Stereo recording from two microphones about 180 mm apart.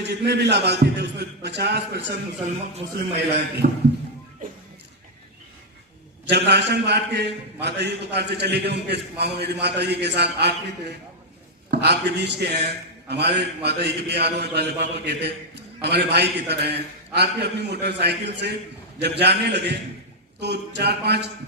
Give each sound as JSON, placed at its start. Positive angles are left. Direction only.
{"t": 0.0, "sound": "a man's voice", "side_deg": -70}
{"t": 3.6, "sound": "speech", "side_deg": -40}
{"t": 6.2, "sound": "a man's voice", "side_deg": -70}
{"t": 11.7, "sound": "a man's voice", "side_deg": -70}